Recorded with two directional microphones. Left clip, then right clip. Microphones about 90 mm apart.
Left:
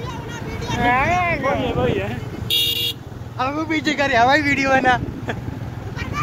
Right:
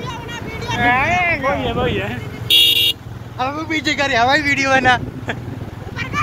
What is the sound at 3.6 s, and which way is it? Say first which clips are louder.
Speech: right 2 dB; 45° left (ahead or behind).